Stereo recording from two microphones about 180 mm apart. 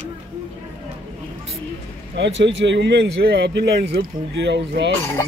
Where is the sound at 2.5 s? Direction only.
85° right.